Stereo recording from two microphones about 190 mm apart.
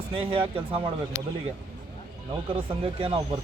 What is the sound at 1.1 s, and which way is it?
Speech, 75° left (ahead or behind).